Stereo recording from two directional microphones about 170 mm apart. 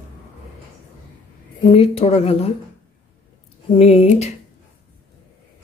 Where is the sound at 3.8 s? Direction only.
40° left (ahead or behind).